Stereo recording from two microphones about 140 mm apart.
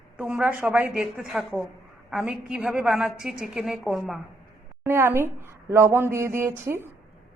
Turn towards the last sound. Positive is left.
turn(degrees=-15)  # may be behind; listen again after turning